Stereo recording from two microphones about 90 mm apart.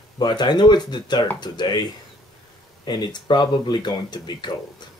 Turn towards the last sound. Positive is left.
turn(degrees=55)  # may be behind; listen again after turning